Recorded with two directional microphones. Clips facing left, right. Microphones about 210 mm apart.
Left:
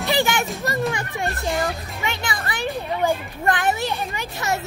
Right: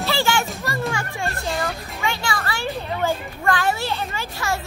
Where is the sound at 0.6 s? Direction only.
20° left (ahead or behind).